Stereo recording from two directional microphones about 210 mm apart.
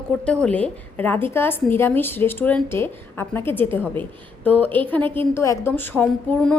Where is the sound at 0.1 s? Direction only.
5° left (ahead or behind).